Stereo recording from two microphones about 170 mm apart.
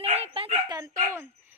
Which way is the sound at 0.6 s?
20° right (ahead or behind).